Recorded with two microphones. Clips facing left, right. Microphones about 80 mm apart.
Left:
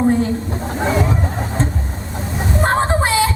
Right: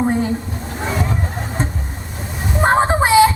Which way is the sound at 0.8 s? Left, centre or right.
Centre.